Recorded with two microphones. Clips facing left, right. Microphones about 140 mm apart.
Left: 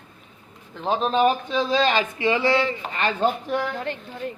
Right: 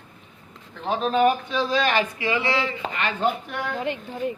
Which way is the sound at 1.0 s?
25° left (ahead or behind).